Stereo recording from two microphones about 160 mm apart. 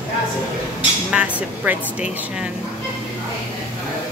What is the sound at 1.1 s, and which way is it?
Speech, 10° right (ahead or behind).